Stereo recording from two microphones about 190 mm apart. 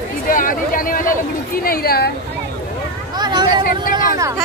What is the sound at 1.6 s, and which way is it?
Speech, 50° left (ahead or behind).